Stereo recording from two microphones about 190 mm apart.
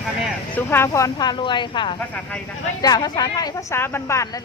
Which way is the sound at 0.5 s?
10° left (ahead or behind).